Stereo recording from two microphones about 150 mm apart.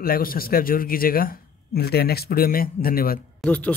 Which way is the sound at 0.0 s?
75° left (ahead or behind).